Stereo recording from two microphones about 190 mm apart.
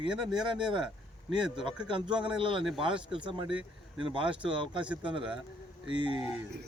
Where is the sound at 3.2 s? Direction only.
25° right (ahead or behind).